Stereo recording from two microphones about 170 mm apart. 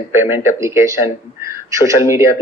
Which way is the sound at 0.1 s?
15° right (ahead or behind).